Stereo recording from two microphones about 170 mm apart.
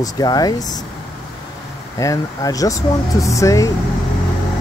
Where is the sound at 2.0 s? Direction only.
20° left (ahead or behind).